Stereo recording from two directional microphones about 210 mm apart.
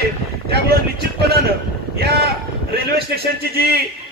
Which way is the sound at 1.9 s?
50° right (ahead or behind).